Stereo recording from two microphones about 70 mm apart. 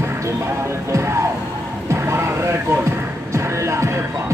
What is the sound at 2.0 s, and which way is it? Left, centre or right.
Music, right.